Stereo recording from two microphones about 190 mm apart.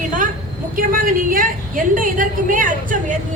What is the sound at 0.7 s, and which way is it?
A woman's voice, 45° right (ahead or behind).